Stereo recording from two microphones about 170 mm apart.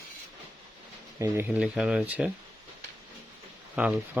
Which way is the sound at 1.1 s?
15° right (ahead or behind).